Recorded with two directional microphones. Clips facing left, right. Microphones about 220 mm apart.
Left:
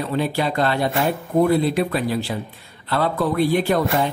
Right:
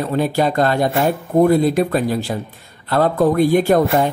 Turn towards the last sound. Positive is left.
turn(degrees=-45)  # may be behind; listen again after turning